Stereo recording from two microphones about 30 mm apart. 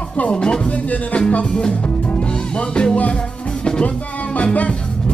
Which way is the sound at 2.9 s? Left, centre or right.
Left.